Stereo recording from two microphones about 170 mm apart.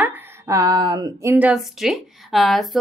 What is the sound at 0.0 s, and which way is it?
A woman's voice, 15° right (ahead or behind).